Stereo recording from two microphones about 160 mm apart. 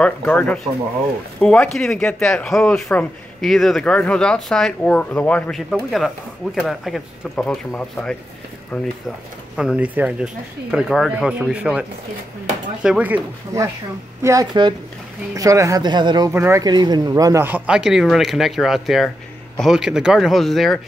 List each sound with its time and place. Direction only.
0.0 s speech: 10° left (ahead or behind)
9.6 s speech: 5° right (ahead or behind)
12.8 s speech: 5° right (ahead or behind); by 16.3 s 30° right (ahead or behind)
16.3 s speech: 15° right (ahead or behind); by 20.8 s centre (ahead or behind)